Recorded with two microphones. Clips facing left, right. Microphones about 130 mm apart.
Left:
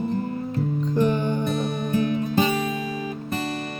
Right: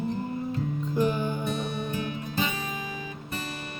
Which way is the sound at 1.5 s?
40° left (ahead or behind).